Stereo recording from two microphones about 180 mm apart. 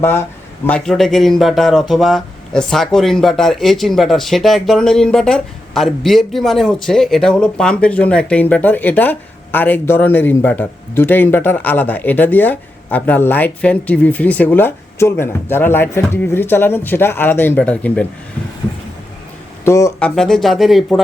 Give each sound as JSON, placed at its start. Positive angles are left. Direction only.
{"t": 0.0, "sound": "speech", "side_deg": 15}
{"t": 19.6, "sound": "speech", "side_deg": 15}
{"t": 20.0, "sound": "speech", "side_deg": 5}